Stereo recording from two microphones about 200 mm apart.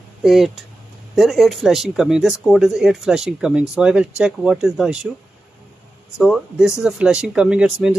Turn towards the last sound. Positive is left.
turn(degrees=-5)  # may be behind; listen again after turning